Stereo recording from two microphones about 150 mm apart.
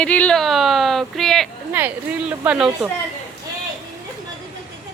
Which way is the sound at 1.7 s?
15° right (ahead or behind).